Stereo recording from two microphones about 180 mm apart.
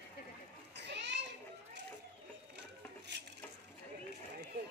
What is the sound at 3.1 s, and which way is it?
Dishes, 70° right (ahead or behind).